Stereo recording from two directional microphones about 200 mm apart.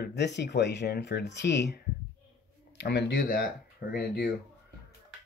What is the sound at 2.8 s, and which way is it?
Speech, 55° left (ahead or behind).